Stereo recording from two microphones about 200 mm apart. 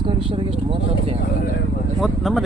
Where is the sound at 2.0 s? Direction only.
Centre (ahead or behind).